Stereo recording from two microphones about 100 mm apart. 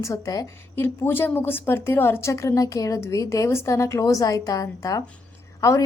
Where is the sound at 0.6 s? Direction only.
25° left (ahead or behind).